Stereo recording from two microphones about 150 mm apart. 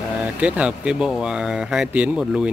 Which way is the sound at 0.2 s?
10° right (ahead or behind).